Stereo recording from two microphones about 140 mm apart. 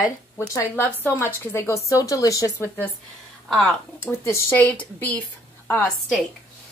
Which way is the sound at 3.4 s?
5° left (ahead or behind).